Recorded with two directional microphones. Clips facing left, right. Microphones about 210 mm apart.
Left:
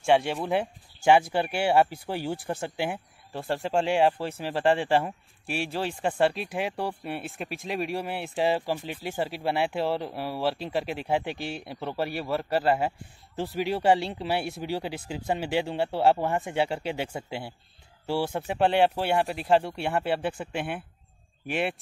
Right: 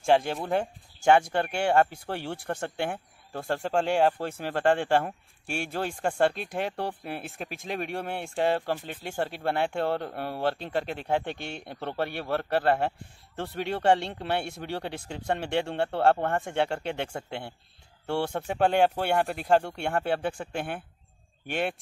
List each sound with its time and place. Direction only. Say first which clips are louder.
0.0 s speech: left 1 dB; 5° left (ahead or behind)
5.6 s speech: left 1 dB; 50° right (ahead or behind)
6.0 s speech: even; 5° left (ahead or behind)